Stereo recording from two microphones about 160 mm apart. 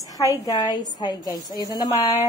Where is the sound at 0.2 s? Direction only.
25° left (ahead or behind).